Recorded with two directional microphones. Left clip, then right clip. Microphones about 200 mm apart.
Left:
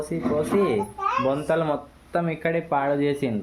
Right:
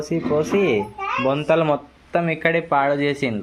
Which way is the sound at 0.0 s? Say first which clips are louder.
Right 4 dB; 20° right (ahead or behind).